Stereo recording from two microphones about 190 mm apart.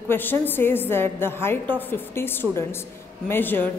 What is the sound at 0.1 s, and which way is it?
A woman's voice, 10° left (ahead or behind).